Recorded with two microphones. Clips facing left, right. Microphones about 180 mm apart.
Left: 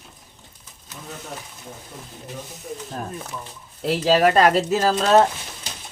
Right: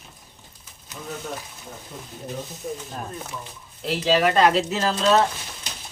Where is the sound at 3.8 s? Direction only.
45° left (ahead or behind).